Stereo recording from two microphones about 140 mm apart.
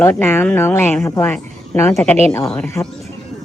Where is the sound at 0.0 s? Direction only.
15° left (ahead or behind).